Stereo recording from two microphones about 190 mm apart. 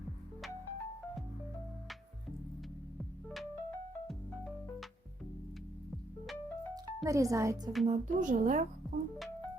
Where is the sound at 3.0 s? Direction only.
Centre (ahead or behind).